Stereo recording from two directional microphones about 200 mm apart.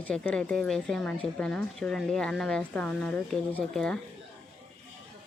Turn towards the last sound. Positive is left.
turn(degrees=5)  # may be behind; listen again after turning